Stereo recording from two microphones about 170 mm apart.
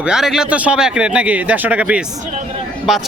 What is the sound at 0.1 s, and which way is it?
A man's voice, 5° right (ahead or behind).